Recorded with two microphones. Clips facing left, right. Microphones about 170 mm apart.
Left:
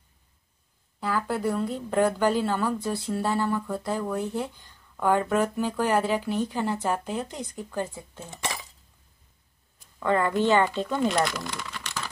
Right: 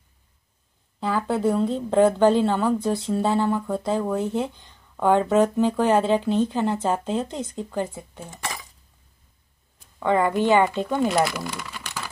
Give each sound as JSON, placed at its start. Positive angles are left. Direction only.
{"t": 1.0, "sound": "a woman's voice", "side_deg": -25}
{"t": 9.9, "sound": "speech", "side_deg": -15}
{"t": 11.0, "sound": "speech", "side_deg": -5}